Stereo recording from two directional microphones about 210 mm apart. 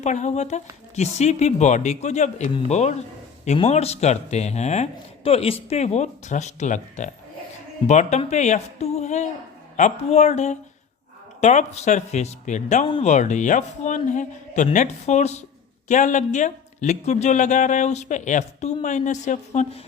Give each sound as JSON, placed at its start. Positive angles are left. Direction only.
{"t": 0.0, "sound": "speech", "side_deg": 35}